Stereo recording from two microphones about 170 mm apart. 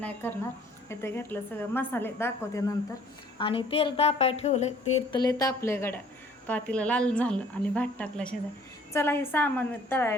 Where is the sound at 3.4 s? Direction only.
30° left (ahead or behind).